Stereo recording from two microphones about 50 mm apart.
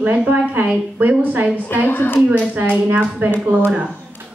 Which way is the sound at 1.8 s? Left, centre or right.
Left.